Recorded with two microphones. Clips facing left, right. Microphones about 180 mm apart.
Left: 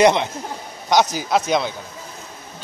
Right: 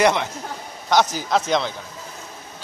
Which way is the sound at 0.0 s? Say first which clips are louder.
Left 3 dB; 20° left (ahead or behind).